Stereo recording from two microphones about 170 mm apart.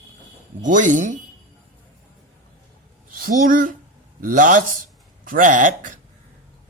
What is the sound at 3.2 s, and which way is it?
Speech, 50° right (ahead or behind).